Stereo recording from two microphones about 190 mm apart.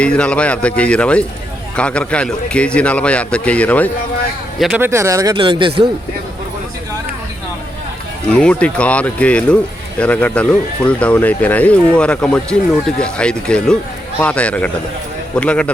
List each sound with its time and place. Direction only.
0.0 s speech: 5° left (ahead or behind)
4.9 s speech: 15° right (ahead or behind)
8.3 s speech: 5° left (ahead or behind)